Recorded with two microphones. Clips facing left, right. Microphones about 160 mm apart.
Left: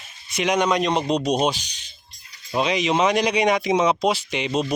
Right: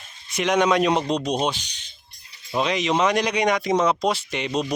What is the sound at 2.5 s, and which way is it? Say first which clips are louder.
Speech: left 1 dB; centre (ahead or behind).